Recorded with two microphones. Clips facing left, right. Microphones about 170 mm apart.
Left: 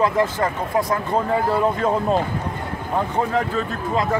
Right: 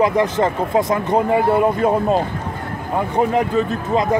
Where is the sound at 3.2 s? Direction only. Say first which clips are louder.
Right 8 dB; 20° right (ahead or behind).